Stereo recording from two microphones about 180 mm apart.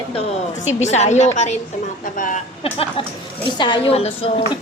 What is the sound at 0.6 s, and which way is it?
Speech, 40° left (ahead or behind).